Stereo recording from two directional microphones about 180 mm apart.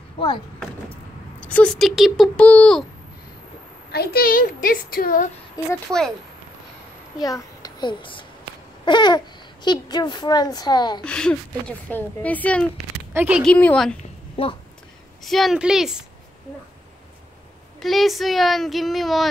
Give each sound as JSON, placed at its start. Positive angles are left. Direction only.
{"t": 1.4, "sound": "speech", "side_deg": 5}
{"t": 3.9, "sound": "a woman's voice", "side_deg": 60}
{"t": 5.9, "sound": "speech", "side_deg": 0}
{"t": 7.2, "sound": "a child's voice", "side_deg": 20}
{"t": 11.1, "sound": "a woman's voice", "side_deg": 5}
{"t": 13.1, "sound": "speech", "side_deg": -10}
{"t": 13.4, "sound": "speech", "side_deg": 5}
{"t": 14.3, "sound": "a sound", "side_deg": 30}
{"t": 15.2, "sound": "speech", "side_deg": 0}
{"t": 17.7, "sound": "speech", "side_deg": 0}